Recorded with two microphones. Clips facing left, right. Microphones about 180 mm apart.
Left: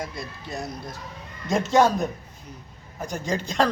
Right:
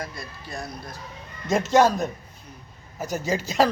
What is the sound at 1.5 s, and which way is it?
Speech, centre (ahead or behind).